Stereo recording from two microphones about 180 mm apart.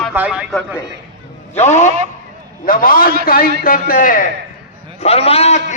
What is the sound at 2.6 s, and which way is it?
A man's voice, 50° left (ahead or behind).